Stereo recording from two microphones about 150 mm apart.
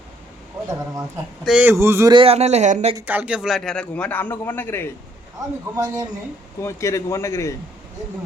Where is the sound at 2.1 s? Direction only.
40° right (ahead or behind).